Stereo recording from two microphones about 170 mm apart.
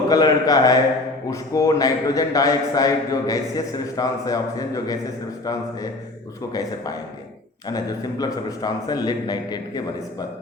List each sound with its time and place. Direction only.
0.1 s a man's voice: 20° left (ahead or behind)
8.2 s a man's voice: 25° left (ahead or behind)